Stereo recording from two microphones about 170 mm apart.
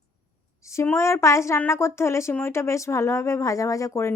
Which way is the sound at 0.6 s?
15° left (ahead or behind).